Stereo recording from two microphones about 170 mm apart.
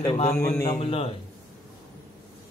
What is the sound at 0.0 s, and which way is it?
Speech, 30° left (ahead or behind).